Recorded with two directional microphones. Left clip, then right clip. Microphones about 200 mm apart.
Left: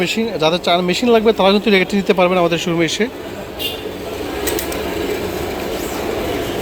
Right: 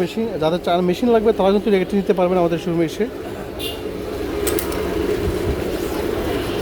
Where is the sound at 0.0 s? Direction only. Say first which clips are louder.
Left 4 dB; 10° right (ahead or behind).